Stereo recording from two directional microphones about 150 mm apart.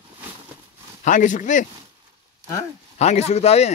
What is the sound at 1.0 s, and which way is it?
Speech, 55° left (ahead or behind).